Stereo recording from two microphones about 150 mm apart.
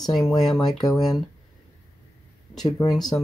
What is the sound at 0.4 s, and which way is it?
Speech, centre (ahead or behind).